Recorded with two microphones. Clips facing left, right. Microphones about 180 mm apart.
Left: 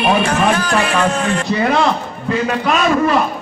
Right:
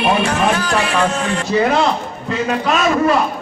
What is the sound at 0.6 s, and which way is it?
Speech, 50° left (ahead or behind).